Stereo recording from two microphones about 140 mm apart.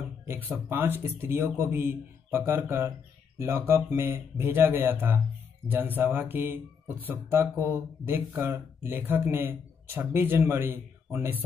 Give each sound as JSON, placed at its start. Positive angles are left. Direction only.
{"t": 0.3, "sound": "speech", "side_deg": -15}